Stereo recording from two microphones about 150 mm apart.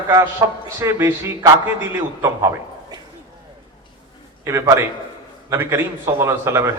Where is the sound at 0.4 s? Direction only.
20° right (ahead or behind).